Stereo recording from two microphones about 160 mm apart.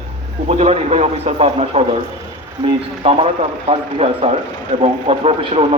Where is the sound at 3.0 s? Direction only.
40° right (ahead or behind).